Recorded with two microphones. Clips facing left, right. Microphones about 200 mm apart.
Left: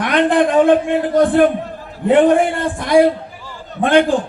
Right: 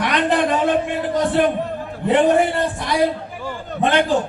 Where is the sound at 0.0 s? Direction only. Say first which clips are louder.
Left 4 dB; 55° left (ahead or behind).